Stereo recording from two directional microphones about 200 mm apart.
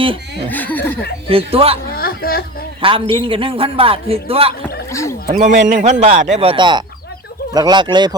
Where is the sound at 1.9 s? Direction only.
50° left (ahead or behind).